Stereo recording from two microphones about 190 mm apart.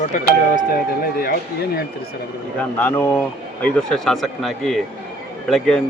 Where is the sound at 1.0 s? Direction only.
55° left (ahead or behind).